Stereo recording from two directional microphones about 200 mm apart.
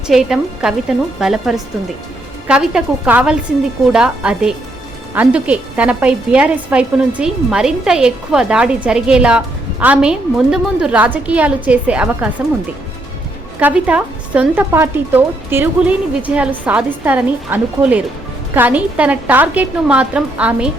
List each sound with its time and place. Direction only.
0.1 s a woman's voice: 5° right (ahead or behind)
13.6 s a woman's voice: 5° right (ahead or behind)